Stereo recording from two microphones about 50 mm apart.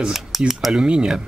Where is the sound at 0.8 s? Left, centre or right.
Centre.